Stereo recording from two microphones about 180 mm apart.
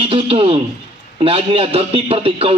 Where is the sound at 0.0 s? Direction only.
30° right (ahead or behind).